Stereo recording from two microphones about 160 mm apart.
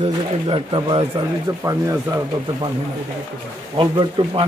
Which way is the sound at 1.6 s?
20° right (ahead or behind).